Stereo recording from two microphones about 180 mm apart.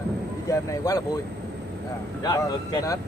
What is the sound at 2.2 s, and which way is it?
Speech, 20° left (ahead or behind).